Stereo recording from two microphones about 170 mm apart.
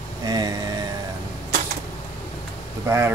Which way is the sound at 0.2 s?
20° right (ahead or behind).